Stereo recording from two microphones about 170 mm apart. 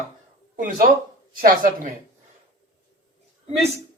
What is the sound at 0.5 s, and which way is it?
Speech, 50° right (ahead or behind).